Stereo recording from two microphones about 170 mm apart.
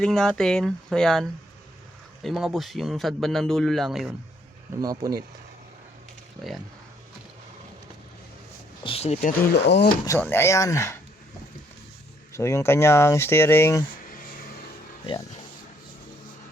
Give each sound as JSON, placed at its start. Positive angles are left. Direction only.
{"t": 0.0, "sound": "a man's voice", "side_deg": 5}
{"t": 4.8, "sound": "speech", "side_deg": -20}
{"t": 8.8, "sound": "speech", "side_deg": 35}
{"t": 9.6, "sound": "speech", "side_deg": 85}
{"t": 10.1, "sound": "speech", "side_deg": 15}
{"t": 12.3, "sound": "speech", "side_deg": 15}